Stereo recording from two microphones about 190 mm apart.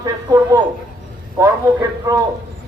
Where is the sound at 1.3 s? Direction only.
15° right (ahead or behind).